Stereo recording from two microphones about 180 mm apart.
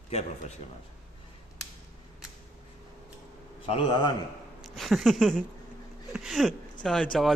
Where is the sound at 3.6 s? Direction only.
30° left (ahead or behind).